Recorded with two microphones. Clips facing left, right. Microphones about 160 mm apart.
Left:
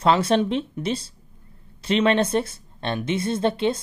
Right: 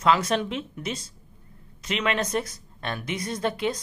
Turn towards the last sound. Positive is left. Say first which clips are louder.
# left 5 dB
turn(degrees=25)  # may be behind; listen again after turning